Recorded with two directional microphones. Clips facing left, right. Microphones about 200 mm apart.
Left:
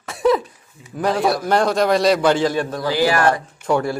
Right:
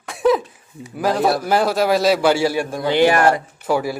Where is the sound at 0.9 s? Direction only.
5° right (ahead or behind).